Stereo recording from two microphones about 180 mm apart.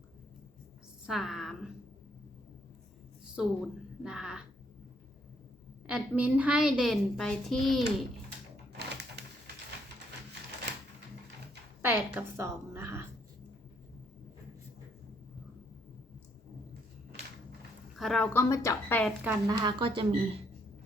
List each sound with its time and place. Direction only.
1.0 s a woman's voice: centre (ahead or behind)
3.3 s a woman's voice: 5° right (ahead or behind)
5.9 s a woman's voice: 5° right (ahead or behind)
8.8 s sewing machine: 65° right (ahead or behind)
11.8 s a woman's voice: 10° right (ahead or behind)
17.9 s a woman's voice: centre (ahead or behind)
18.3 s a woman's voice: 15° left (ahead or behind)
19.2 s speech: 15° right (ahead or behind)